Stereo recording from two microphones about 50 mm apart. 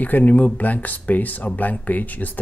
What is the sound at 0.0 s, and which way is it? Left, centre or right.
Speech, left.